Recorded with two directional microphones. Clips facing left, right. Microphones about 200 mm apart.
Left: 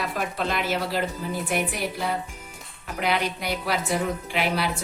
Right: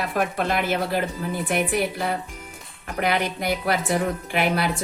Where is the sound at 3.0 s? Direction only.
55° right (ahead or behind).